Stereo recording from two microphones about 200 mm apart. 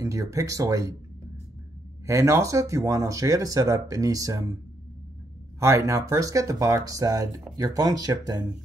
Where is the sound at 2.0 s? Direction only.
15° right (ahead or behind).